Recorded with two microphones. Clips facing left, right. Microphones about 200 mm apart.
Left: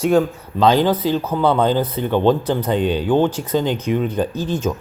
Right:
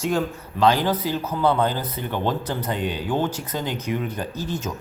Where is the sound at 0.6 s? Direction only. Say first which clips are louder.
Left 5 dB; 20° left (ahead or behind).